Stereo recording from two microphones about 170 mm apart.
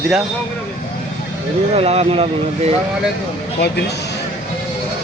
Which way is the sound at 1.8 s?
35° right (ahead or behind).